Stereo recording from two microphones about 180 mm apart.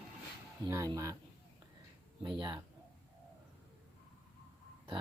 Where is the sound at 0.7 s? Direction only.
15° right (ahead or behind).